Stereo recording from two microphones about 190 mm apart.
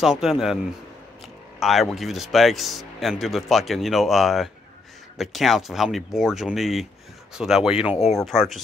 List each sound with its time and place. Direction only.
0.0 s speech: centre (ahead or behind)
1.6 s speech: centre (ahead or behind)
7.9 s speech: 35° left (ahead or behind)
8.3 s speech: centre (ahead or behind)